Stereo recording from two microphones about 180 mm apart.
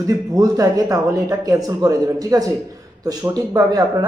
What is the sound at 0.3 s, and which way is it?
Speech, 20° right (ahead or behind).